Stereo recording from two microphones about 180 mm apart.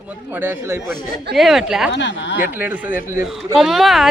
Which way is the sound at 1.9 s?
85° left.